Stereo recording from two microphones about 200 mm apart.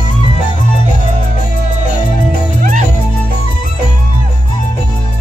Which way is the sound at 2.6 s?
40° right (ahead or behind).